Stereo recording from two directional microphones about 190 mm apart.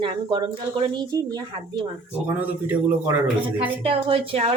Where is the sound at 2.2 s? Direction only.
10° right (ahead or behind).